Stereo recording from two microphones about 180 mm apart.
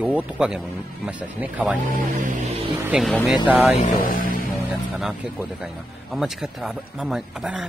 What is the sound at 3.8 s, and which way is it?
Speech, 50° left (ahead or behind).